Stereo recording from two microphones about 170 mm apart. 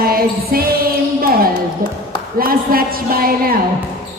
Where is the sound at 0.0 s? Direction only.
60° right (ahead or behind).